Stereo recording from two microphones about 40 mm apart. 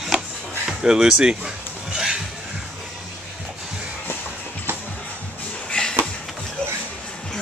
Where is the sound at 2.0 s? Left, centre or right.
Centre.